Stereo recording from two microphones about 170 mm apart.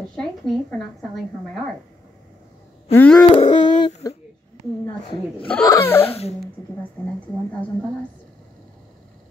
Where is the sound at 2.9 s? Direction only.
10° left (ahead or behind).